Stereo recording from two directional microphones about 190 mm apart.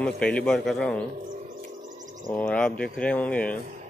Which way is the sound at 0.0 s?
5° left (ahead or behind).